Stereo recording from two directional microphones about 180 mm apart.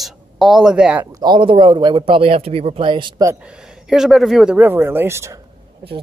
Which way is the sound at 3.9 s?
Centre (ahead or behind).